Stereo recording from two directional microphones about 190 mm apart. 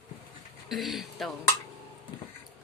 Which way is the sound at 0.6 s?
Centre (ahead or behind).